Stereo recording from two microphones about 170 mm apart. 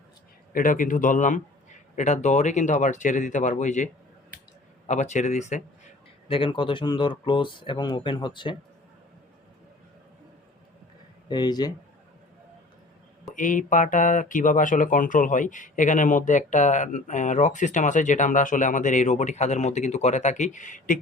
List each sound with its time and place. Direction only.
0.5 s speech: 55° left (ahead or behind)
4.9 s speech: 45° left (ahead or behind)
6.2 s speech: 30° left (ahead or behind)
11.3 s speech: 25° left (ahead or behind)
13.3 s speech: 50° left (ahead or behind)